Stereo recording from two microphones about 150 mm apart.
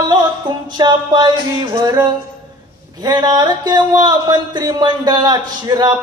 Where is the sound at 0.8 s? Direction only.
30° right (ahead or behind).